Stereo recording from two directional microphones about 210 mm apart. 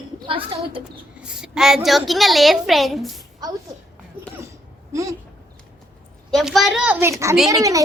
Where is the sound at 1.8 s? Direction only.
Centre (ahead or behind).